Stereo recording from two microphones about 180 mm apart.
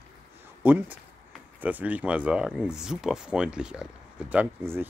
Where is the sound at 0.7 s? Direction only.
10° right (ahead or behind).